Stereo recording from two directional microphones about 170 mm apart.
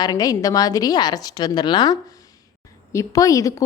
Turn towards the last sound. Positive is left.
turn(degrees=20)  # may be behind; listen again after turning